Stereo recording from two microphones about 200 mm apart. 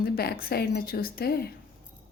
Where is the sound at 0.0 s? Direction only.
50° left (ahead or behind).